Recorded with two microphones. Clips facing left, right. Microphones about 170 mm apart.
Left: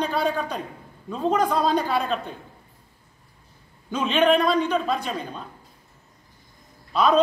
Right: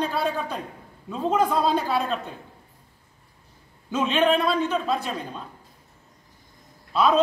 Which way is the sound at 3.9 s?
5° right (ahead or behind).